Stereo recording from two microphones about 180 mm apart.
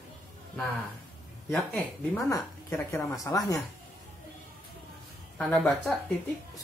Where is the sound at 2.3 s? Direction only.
15° left (ahead or behind).